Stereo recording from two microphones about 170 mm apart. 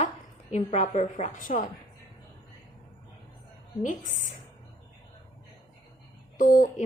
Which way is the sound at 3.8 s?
45° left (ahead or behind).